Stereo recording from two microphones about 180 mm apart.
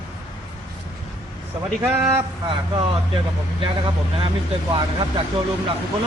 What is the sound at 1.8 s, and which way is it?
Speech, 15° right (ahead or behind).